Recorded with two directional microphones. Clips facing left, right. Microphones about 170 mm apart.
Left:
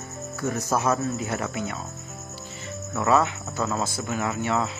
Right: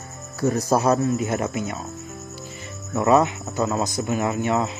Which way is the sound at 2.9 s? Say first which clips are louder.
Right 4 dB; 20° right (ahead or behind).